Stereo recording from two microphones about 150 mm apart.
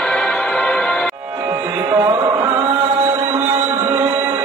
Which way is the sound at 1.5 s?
20° right (ahead or behind).